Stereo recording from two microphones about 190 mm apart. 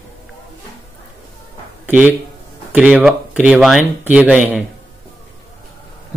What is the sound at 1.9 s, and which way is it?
Speech, 5° right (ahead or behind).